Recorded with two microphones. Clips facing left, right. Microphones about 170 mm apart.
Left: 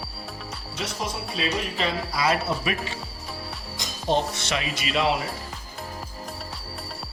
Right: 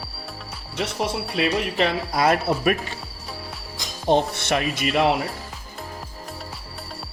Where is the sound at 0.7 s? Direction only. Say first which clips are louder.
Right 6 dB; 65° right (ahead or behind).